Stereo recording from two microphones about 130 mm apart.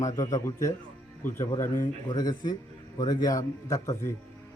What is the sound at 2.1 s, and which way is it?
A man's voice, 30° left (ahead or behind).